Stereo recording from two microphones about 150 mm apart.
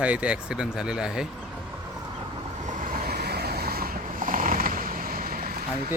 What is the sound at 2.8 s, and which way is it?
Mechanisms, 65° right (ahead or behind).